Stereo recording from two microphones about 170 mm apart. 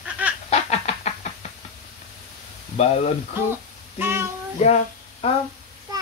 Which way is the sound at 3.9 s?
15° right (ahead or behind).